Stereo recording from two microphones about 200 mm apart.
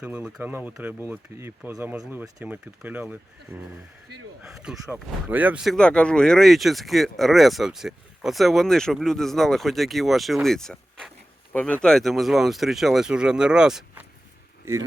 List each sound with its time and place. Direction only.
0.0 s speech: 5° right (ahead or behind)